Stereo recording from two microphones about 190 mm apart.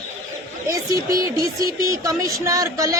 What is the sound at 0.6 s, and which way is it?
Speech, 15° right (ahead or behind).